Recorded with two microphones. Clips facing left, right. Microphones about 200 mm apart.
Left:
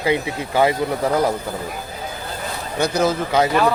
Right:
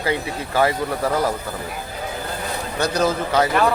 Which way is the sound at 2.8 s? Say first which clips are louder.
Left 2 dB; 10° left (ahead or behind).